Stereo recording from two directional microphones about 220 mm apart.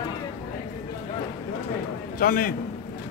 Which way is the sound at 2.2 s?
40° left (ahead or behind).